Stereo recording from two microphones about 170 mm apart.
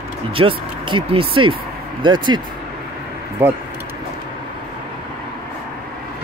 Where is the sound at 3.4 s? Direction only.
10° right (ahead or behind).